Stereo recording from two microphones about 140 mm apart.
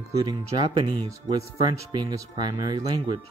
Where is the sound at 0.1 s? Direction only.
30° right (ahead or behind).